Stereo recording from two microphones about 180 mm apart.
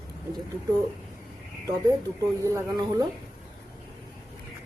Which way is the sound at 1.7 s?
20° right (ahead or behind).